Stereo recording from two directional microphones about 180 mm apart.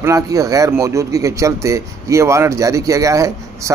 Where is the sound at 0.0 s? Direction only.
20° right (ahead or behind).